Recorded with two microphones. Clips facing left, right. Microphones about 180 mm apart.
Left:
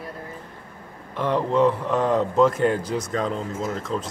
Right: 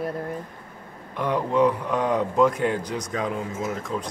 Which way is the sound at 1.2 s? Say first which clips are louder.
Left 1 dB; 5° right (ahead or behind).